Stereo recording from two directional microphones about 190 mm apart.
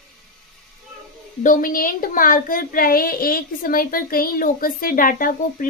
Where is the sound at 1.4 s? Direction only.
45° left (ahead or behind).